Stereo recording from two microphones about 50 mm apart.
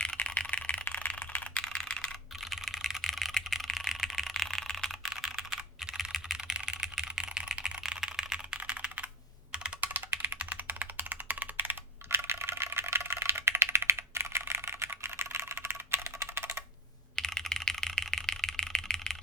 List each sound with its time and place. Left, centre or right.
0.3 s a sound: left
0.7 s rattle: left
1.6 s computer keyboard: centre
2.5 s computer keyboard: centre
3.1 s a sound: centre
5.0 s computer keyboard: centre
6.3 s computer keyboard: centre
8.7 s computer keyboard: right
9.8 s typing: right
10.7 s computer keyboard: right
13.6 s typing: right
17.2 s computer keyboard: centre
18.8 s a sound: centre